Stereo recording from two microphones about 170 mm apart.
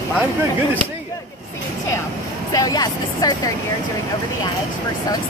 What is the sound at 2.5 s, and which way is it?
Speech, 20° left (ahead or behind).